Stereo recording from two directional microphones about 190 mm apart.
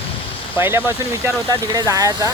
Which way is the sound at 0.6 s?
10° right (ahead or behind).